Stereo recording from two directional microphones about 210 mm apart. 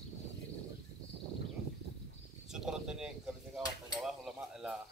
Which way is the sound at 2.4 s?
Centre (ahead or behind).